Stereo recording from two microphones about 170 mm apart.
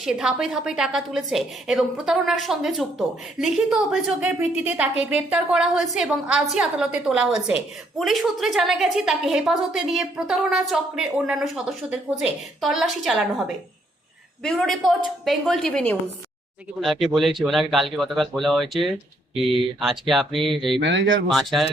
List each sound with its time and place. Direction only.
0.0 s a woman's voice: 5° right (ahead or behind)
14.4 s a woman's voice: 5° left (ahead or behind)
20.7 s speech: 90° right
21.2 s a woman's voice: centre (ahead or behind)